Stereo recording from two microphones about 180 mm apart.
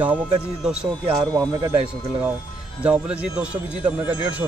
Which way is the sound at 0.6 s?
5° right (ahead or behind).